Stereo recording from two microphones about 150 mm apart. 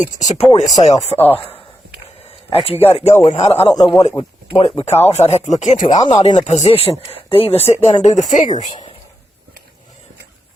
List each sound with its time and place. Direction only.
0.0 s speech: 50° left (ahead or behind)
1.1 s speech: 10° left (ahead or behind)
2.5 s speech: 40° left (ahead or behind)
3.6 s speech: 25° left (ahead or behind)
5.0 s speech: 45° left (ahead or behind)
6.0 s speech: 25° left (ahead or behind)
6.2 s speech: 50° left (ahead or behind)